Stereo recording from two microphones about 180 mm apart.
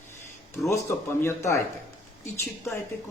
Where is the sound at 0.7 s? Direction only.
15° left (ahead or behind).